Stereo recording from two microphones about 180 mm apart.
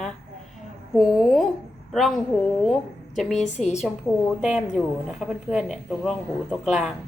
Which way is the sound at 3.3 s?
40° left (ahead or behind).